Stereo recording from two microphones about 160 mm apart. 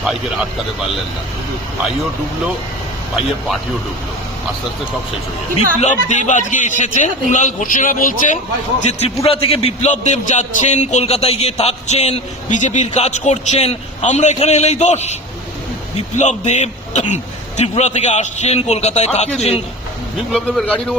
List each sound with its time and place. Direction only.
0.0 s speech: centre (ahead or behind)
5.8 s a man's voice: 50° left (ahead or behind)
8.9 s a man's voice: 40° left (ahead or behind)
20.3 s a man's voice: 5° left (ahead or behind)